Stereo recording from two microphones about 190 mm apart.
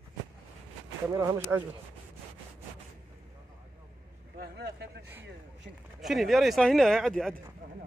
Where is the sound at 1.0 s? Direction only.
15° right (ahead or behind).